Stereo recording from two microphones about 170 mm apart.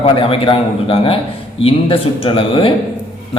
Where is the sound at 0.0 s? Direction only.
30° left (ahead or behind).